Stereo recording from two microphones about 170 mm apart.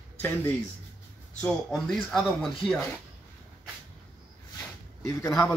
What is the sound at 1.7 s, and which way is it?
Speech, centre (ahead or behind).